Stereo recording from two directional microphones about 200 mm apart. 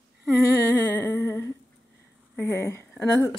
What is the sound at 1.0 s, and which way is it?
Humming, 10° left (ahead or behind).